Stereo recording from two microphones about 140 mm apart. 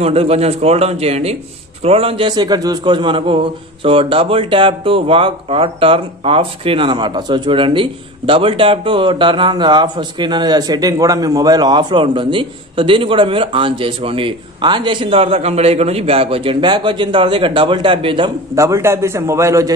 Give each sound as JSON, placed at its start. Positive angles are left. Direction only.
{"t": 0.0, "sound": "a man's voice", "side_deg": -45}
{"t": 18.5, "sound": "a man's voice", "side_deg": -20}